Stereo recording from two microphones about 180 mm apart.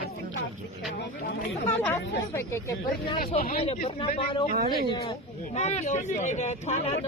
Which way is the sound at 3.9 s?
30° left (ahead or behind).